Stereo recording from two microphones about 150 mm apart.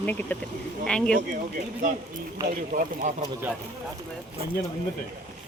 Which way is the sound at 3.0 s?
55° right (ahead or behind).